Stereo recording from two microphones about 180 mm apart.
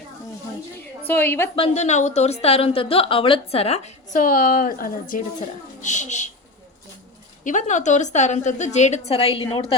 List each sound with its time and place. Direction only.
1.0 s a woman's voice: 10° left (ahead or behind)
1.5 s a woman's voice: 35° left (ahead or behind)
7.4 s a woman's voice: 45° left (ahead or behind)